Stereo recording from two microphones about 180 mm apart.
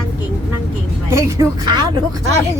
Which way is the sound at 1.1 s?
15° right (ahead or behind).